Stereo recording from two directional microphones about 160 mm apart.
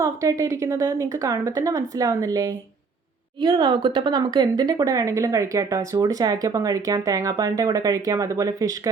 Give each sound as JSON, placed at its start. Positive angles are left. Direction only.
{"t": 0.0, "sound": "speech", "side_deg": -20}